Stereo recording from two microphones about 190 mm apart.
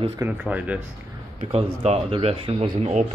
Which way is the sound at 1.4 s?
30° right (ahead or behind).